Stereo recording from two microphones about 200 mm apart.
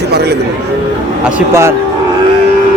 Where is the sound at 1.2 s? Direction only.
10° right (ahead or behind).